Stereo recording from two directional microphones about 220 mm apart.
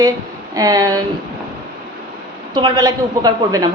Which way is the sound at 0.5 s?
15° right (ahead or behind).